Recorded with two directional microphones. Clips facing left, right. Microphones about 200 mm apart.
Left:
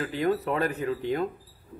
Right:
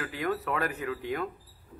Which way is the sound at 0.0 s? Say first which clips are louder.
Left 5 dB; 25° left (ahead or behind).